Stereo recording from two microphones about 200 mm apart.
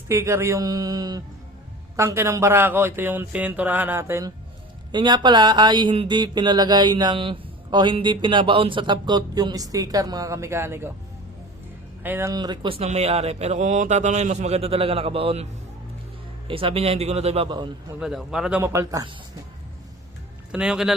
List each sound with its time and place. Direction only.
0.1 s speech: 15° right (ahead or behind)
4.9 s speech: 20° right (ahead or behind)
12.0 s speech: 10° right (ahead or behind); by 15.4 s 30° right (ahead or behind)
16.5 s speech: 25° right (ahead or behind)
18.0 s speech: centre (ahead or behind); by 19.1 s 15° right (ahead or behind)
20.5 s a man's voice: 5° right (ahead or behind)